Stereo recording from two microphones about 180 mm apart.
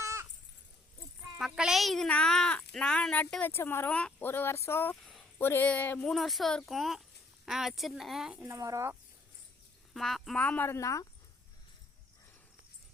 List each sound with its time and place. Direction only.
0.0 s a sound: 15° right (ahead or behind)
1.4 s speech: centre (ahead or behind)
8.5 s speech: 15° right (ahead or behind)
9.9 s speech: centre (ahead or behind); by 11.1 s 15° left (ahead or behind)